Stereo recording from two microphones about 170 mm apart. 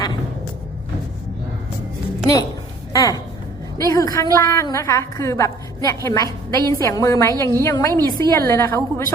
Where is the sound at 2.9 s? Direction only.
20° left (ahead or behind).